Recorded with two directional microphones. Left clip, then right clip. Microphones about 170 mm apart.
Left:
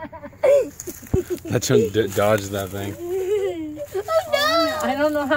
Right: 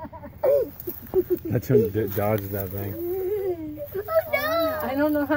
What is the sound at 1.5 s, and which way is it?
Speech, 25° left (ahead or behind).